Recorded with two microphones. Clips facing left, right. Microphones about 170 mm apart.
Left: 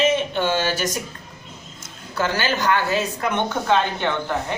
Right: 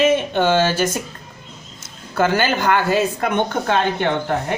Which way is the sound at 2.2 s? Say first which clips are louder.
Right 5 dB; 55° right (ahead or behind).